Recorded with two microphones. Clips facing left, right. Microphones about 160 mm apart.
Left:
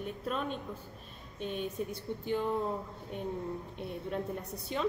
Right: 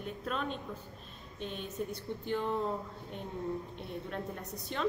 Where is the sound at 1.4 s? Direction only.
50° left (ahead or behind).